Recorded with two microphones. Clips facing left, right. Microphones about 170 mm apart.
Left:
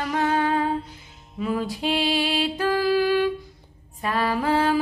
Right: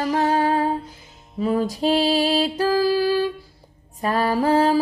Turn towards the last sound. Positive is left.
turn(degrees=-40)  # may be behind; listen again after turning